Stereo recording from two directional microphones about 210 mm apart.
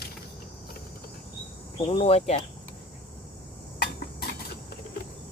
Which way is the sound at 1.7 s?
25° left (ahead or behind).